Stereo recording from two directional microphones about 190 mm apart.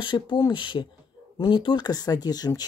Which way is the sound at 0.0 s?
25° left (ahead or behind).